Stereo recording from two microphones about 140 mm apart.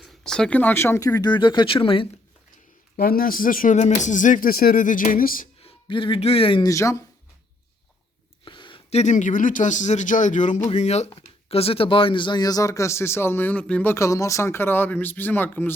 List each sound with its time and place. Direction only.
0.0 s speech: 5° left (ahead or behind); by 2.0 s 40° left (ahead or behind)
2.9 s speech: 90° left
5.6 s speech: 40° left (ahead or behind)
6.7 s speech: 20° left (ahead or behind)
8.4 s a sound: 35° left (ahead or behind)
8.9 s speech: 55° left (ahead or behind); by 15.7 s 15° left (ahead or behind)